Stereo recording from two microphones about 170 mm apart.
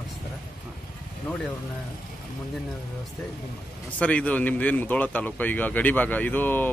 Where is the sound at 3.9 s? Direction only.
10° left (ahead or behind).